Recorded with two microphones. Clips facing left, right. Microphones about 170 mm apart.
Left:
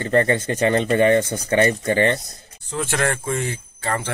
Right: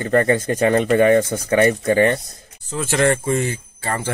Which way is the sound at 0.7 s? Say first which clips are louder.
Right 2 dB; 25° left (ahead or behind).